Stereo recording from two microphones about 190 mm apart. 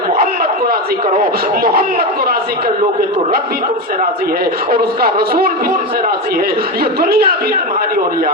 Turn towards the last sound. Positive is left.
turn(degrees=-50)  # may be behind; listen again after turning